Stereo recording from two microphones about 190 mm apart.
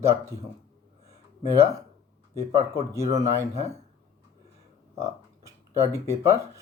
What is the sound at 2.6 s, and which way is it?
Speech, 15° right (ahead or behind).